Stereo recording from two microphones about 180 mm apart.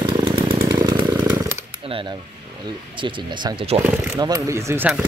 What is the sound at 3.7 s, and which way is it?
Speech, 20° right (ahead or behind).